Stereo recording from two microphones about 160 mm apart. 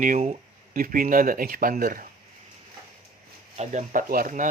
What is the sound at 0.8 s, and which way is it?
Speech, 60° right (ahead or behind).